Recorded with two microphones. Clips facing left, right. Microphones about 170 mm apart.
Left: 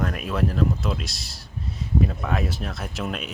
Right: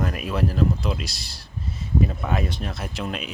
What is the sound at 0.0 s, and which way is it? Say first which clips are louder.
Speech: even; centre (ahead or behind).